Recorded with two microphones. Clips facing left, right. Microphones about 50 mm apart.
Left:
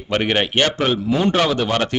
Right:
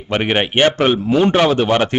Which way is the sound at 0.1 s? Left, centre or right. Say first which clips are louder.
Right 2 dB; centre.